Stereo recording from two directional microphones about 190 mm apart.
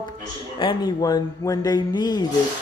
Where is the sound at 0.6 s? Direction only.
20° left (ahead or behind).